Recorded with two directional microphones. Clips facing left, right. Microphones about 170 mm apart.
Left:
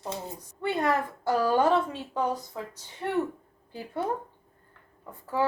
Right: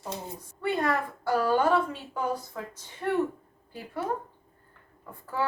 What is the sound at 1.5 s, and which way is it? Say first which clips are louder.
A woman's voice: left 1 dB; 20° left (ahead or behind).